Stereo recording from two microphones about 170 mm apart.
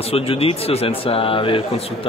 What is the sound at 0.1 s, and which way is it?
Speech, 35° left (ahead or behind).